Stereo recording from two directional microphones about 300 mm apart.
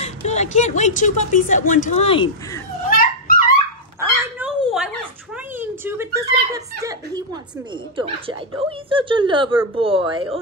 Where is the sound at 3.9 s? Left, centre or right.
Centre.